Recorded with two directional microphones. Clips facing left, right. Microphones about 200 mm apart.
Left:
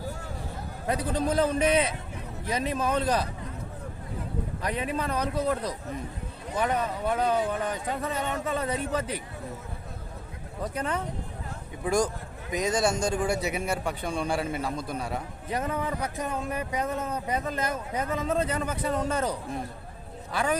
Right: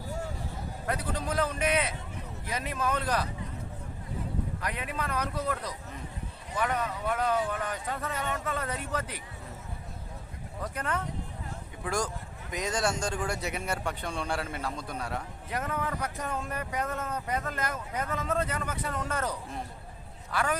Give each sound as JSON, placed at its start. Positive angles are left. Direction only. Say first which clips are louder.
{"t": 0.9, "sound": "speech", "louder": "left 6 dB", "side_deg": 25}
{"t": 4.6, "sound": "speech", "louder": "left 5 dB", "side_deg": 30}
{"t": 10.6, "sound": "speech", "louder": "left 3 dB", "side_deg": 20}